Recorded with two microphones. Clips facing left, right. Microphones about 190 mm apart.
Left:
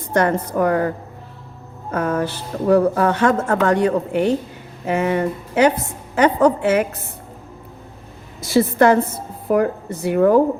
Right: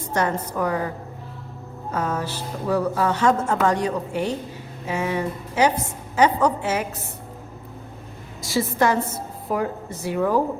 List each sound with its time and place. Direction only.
0.1 s speech: 55° left (ahead or behind)
8.4 s speech: 55° left (ahead or behind)